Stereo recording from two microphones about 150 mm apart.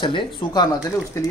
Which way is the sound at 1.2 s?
20° left (ahead or behind).